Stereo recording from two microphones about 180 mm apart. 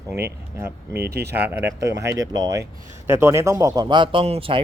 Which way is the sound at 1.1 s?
65° right (ahead or behind).